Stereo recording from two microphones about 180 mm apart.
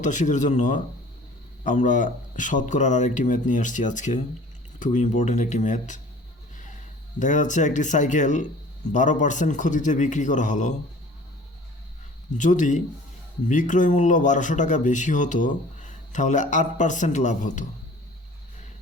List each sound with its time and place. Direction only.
0.0 s speech: 45° left (ahead or behind)
7.2 s speech: 45° left (ahead or behind)
12.4 s speech: 45° left (ahead or behind)